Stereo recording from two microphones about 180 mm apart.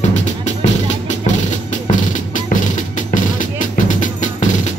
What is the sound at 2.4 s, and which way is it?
Music, 45° left (ahead or behind).